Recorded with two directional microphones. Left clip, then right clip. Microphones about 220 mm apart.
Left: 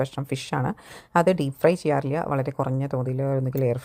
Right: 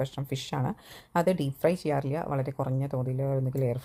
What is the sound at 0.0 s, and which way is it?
Speech, 20° left (ahead or behind).